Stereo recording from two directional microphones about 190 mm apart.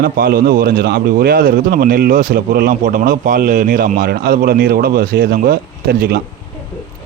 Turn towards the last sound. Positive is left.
turn(degrees=-55)  # may be behind; listen again after turning